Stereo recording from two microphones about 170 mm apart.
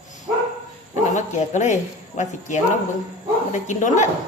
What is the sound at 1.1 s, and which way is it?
A man's voice, 45° left (ahead or behind).